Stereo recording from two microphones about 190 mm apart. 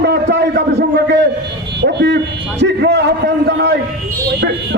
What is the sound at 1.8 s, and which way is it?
A man's voice, 65° right (ahead or behind).